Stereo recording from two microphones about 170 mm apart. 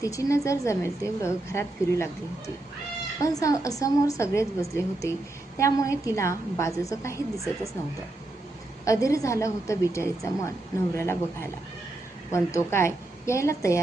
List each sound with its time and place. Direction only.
0.0 s a woman's voice: 20° left (ahead or behind)
3.2 s a woman's voice: 20° left (ahead or behind)
8.8 s a woman's voice: 20° left (ahead or behind)